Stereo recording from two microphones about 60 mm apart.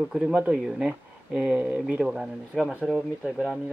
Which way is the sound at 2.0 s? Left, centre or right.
Centre.